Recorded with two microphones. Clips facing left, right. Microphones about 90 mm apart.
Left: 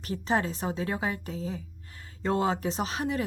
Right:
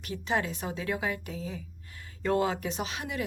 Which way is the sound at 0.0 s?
35° left (ahead or behind).